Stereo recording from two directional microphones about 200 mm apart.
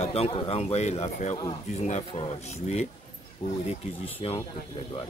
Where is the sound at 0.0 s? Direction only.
30° left (ahead or behind).